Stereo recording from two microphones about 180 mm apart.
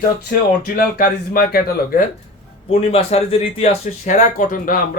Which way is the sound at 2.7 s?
35° left (ahead or behind).